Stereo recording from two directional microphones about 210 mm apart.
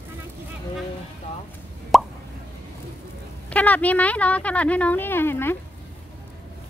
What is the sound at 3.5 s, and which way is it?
Speech, 5° left (ahead or behind).